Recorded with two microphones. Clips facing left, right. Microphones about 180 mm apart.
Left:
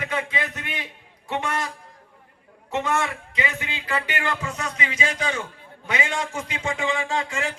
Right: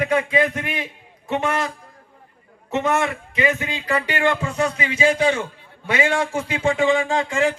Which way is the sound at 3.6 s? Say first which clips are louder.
Right 5 dB; 35° right (ahead or behind).